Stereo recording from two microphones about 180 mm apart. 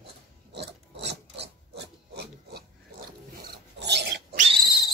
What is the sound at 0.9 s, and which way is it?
Filing, 75° right (ahead or behind).